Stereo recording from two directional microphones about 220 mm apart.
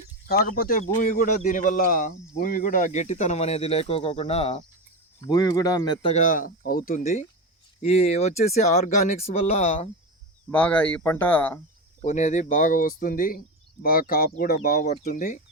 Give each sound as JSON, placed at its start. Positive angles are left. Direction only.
{"t": 0.3, "sound": "a man's voice", "side_deg": 45}
{"t": 5.2, "sound": "a man's voice", "side_deg": 15}
{"t": 10.5, "sound": "speech", "side_deg": 5}
{"t": 12.0, "sound": "a man's voice", "side_deg": 35}